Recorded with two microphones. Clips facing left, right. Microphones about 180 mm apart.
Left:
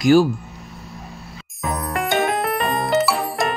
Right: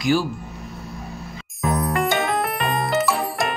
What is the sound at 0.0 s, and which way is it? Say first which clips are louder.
Speech: left 7 dB; 45° left (ahead or behind).